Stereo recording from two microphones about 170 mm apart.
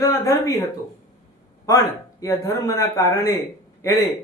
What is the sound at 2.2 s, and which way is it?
A man's voice, 20° left (ahead or behind).